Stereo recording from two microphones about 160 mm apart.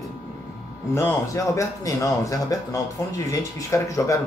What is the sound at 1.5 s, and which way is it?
Speech, 20° left (ahead or behind).